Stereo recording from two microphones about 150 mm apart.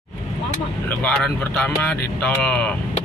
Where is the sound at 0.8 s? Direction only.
10° left (ahead or behind).